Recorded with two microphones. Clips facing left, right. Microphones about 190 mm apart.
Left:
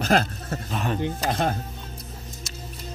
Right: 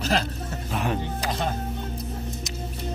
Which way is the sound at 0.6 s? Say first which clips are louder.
Right 1 dB; 10° right (ahead or behind).